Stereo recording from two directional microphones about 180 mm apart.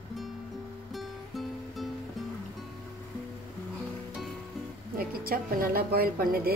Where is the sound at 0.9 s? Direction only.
Centre (ahead or behind).